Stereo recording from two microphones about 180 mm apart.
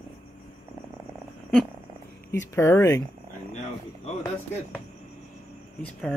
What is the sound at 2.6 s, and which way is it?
Speech, 15° left (ahead or behind).